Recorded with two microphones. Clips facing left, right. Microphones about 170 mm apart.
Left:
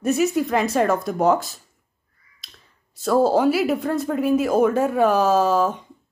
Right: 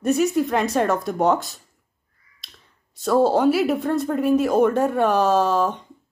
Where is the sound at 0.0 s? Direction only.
Centre (ahead or behind).